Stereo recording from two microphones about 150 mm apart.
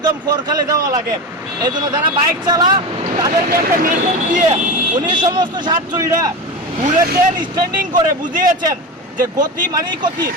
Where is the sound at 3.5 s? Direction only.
65° right (ahead or behind).